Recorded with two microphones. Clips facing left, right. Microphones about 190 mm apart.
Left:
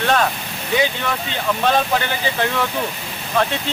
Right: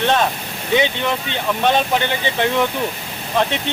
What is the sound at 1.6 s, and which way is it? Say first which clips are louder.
Speech: right 1 dB; 20° right (ahead or behind).